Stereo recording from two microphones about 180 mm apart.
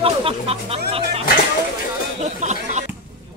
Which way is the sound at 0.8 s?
35° right (ahead or behind).